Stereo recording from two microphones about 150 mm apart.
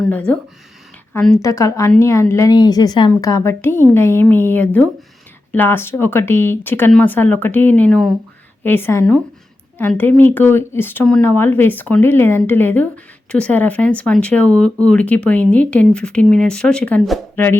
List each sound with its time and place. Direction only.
0.0 s speech: 10° left (ahead or behind)
1.4 s a woman's voice: 20° left (ahead or behind)